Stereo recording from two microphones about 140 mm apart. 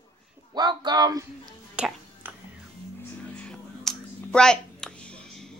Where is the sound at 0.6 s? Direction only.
30° right (ahead or behind).